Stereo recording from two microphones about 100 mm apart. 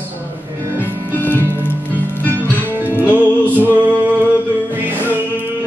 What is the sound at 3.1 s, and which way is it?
Music, 20° right (ahead or behind).